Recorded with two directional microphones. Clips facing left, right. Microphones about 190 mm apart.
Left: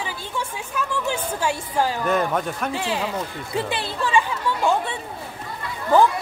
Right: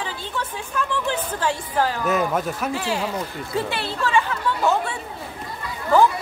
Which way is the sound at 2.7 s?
20° left (ahead or behind).